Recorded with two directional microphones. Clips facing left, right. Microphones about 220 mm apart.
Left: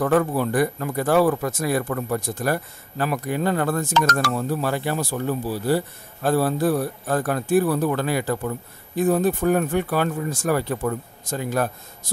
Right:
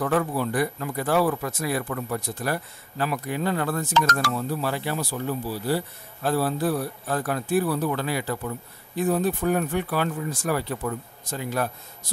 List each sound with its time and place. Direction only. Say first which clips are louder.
0.0 s speech: left 4 dB; 45° left (ahead or behind)